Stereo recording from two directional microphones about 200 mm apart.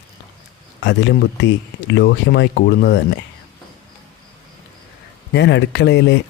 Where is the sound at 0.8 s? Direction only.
60° left (ahead or behind).